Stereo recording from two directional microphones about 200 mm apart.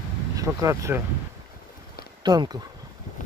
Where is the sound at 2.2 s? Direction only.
20° right (ahead or behind).